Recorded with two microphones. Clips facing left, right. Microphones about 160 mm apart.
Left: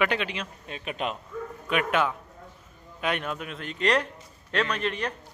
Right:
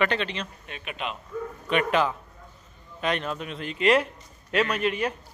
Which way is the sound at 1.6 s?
Centre (ahead or behind).